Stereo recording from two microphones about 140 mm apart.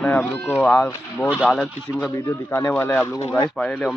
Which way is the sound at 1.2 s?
Centre (ahead or behind).